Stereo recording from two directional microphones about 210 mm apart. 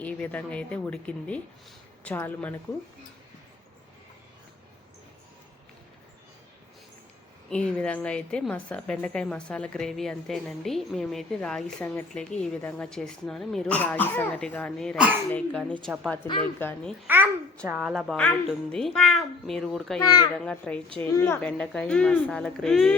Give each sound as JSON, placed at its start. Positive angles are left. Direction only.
{"t": 0.0, "sound": "a woman's voice", "side_deg": 5}
{"t": 7.5, "sound": "a woman's voice", "side_deg": 5}
{"t": 15.3, "sound": "a woman's voice", "side_deg": 5}
{"t": 17.7, "sound": "a woman's voice", "side_deg": -5}
{"t": 20.0, "sound": "speech", "side_deg": 20}
{"t": 20.3, "sound": "a woman's voice", "side_deg": 5}